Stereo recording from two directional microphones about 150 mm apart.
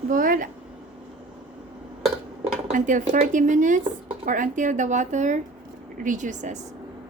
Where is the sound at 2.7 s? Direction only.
55° right (ahead or behind).